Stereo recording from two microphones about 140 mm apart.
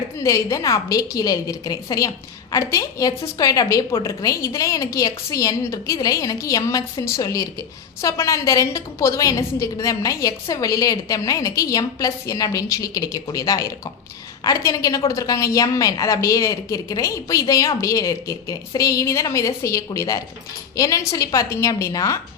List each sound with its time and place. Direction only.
0.2 s a woman's voice: 20° left (ahead or behind)